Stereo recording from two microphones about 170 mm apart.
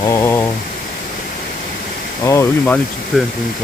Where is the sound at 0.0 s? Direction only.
15° left (ahead or behind).